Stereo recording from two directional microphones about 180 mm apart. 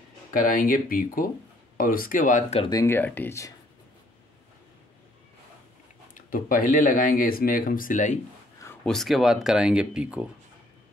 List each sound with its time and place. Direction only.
0.3 s speech: 50° left (ahead or behind)
2.7 s speech: 15° left (ahead or behind)
6.1 s speech: 50° left (ahead or behind)
8.8 s speech: centre (ahead or behind)